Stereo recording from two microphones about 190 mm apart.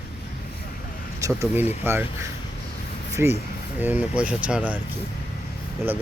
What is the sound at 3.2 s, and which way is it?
Speech, 10° right (ahead or behind).